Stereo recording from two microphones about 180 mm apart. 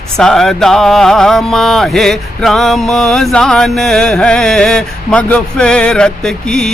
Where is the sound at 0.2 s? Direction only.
Centre (ahead or behind).